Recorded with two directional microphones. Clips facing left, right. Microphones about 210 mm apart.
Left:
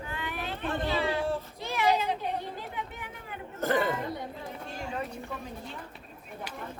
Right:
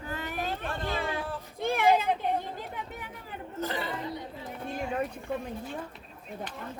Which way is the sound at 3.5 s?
50° left (ahead or behind).